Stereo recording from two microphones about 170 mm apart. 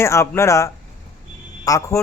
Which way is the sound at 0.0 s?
15° left (ahead or behind).